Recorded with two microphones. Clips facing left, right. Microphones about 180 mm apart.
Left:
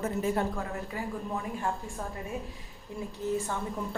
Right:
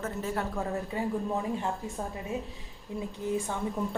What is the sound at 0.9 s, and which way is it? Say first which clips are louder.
Speech: right 5 dB; 25° right (ahead or behind).